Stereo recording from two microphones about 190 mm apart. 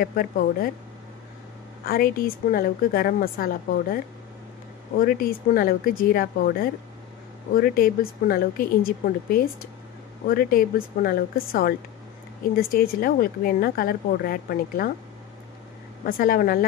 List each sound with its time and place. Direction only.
0.0 s speech: 50° left (ahead or behind)
1.9 s speech: 50° left (ahead or behind)
16.1 s speech: 45° left (ahead or behind)